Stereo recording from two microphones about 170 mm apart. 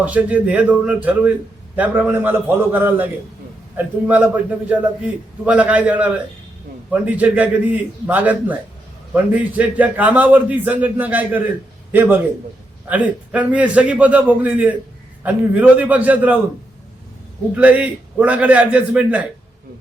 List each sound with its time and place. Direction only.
0.0 s a man's voice: 10° right (ahead or behind)
17.5 s a man's voice: 10° right (ahead or behind)